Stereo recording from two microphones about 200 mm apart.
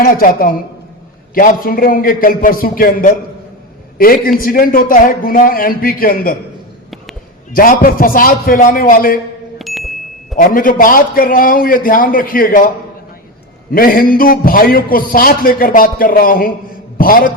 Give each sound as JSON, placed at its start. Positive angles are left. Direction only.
{"t": 0.0, "sound": "a man's voice", "side_deg": 45}
{"t": 7.5, "sound": "a man's voice", "side_deg": 45}
{"t": 9.6, "sound": "ding", "side_deg": 0}
{"t": 10.3, "sound": "a man's voice", "side_deg": 45}
{"t": 13.7, "sound": "a man's voice", "side_deg": 45}